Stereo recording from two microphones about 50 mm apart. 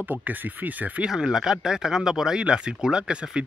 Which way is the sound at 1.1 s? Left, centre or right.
Centre.